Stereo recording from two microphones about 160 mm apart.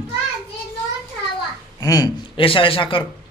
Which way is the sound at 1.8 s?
25° left (ahead or behind).